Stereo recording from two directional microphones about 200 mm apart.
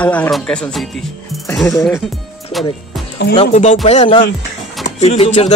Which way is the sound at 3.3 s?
30° left (ahead or behind).